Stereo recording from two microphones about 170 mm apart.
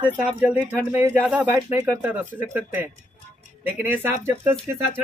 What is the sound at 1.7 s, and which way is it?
Speech, 20° right (ahead or behind).